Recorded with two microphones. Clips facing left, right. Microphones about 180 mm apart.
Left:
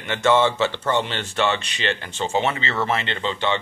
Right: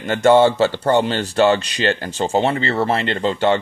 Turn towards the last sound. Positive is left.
turn(degrees=-45)  # may be behind; listen again after turning